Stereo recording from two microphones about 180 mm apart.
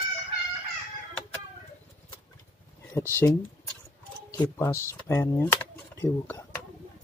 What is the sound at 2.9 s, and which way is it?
Speech, 15° left (ahead or behind).